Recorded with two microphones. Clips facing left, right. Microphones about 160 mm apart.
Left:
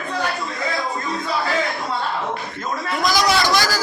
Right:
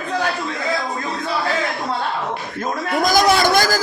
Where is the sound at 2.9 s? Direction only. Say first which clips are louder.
Right 4 dB; 50° right (ahead or behind).